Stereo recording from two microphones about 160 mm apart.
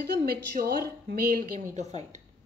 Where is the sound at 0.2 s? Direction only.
75° right (ahead or behind).